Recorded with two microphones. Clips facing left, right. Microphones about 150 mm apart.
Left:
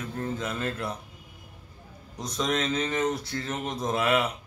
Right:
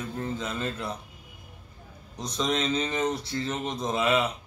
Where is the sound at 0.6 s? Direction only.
5° left (ahead or behind).